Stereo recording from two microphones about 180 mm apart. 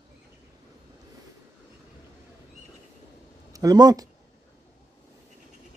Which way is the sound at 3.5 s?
20° right (ahead or behind).